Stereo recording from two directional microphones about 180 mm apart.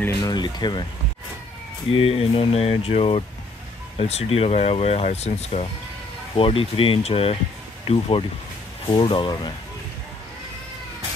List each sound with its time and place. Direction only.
0.2 s speech: 25° left (ahead or behind)
1.9 s speech: 30° left (ahead or behind)